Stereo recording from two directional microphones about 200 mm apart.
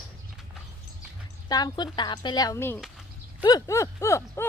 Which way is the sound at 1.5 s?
20° left (ahead or behind).